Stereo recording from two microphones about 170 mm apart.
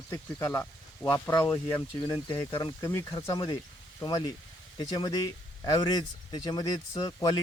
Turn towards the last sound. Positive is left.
turn(degrees=25)  # may be behind; listen again after turning